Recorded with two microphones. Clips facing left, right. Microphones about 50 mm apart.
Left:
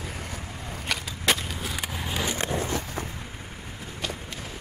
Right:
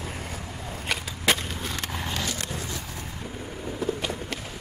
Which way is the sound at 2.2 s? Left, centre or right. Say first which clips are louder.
Left 4 dB; left.